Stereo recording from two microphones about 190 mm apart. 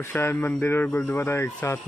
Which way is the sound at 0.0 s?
10° left (ahead or behind).